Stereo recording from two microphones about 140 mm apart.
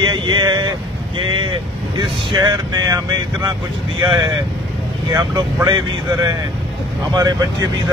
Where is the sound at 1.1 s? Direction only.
35° right (ahead or behind).